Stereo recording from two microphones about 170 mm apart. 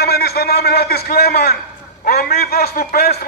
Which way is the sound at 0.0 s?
70° left (ahead or behind).